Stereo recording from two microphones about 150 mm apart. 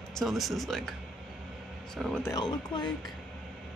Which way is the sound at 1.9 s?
5° left (ahead or behind).